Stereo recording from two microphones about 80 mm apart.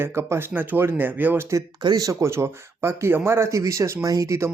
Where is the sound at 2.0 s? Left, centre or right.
Right.